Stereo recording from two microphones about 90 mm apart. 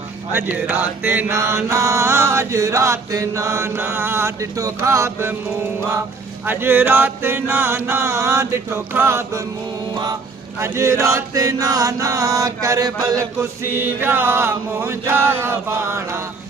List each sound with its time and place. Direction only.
0.3 s mantra: 20° right (ahead or behind)
6.4 s chant: 25° right (ahead or behind)
10.6 s mantra: 30° right (ahead or behind)
13.8 s chant: 25° right (ahead or behind)